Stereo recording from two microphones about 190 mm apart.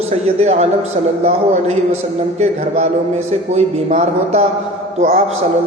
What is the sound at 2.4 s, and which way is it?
A man's voice, 35° right (ahead or behind).